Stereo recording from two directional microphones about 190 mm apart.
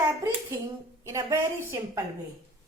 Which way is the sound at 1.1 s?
15° right (ahead or behind).